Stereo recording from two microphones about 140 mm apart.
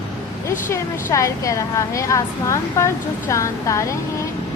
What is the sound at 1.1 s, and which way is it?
A woman's voice, 20° left (ahead or behind).